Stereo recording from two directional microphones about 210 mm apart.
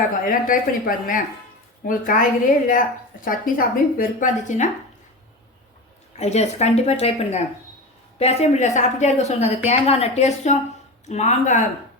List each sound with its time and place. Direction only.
0.3 s speech: 40° left (ahead or behind)
6.1 s speech: 30° left (ahead or behind)